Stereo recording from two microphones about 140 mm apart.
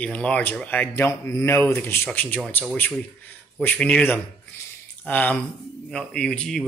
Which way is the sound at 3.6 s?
10° left (ahead or behind).